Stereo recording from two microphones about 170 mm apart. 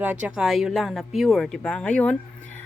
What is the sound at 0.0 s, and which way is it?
Speech, 10° right (ahead or behind).